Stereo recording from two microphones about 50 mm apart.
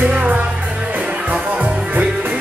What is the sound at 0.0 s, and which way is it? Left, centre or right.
Music, right.